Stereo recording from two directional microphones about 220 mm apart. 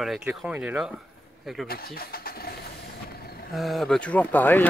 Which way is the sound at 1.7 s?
45° left (ahead or behind).